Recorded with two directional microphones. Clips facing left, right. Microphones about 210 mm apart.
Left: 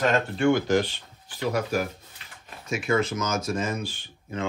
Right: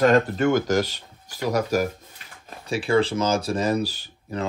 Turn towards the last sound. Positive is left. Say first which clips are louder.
# right 3 dB
turn(degrees=-40)  # may be behind; listen again after turning